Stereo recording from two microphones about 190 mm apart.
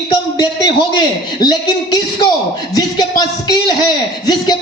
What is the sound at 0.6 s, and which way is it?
Speech, 25° left (ahead or behind).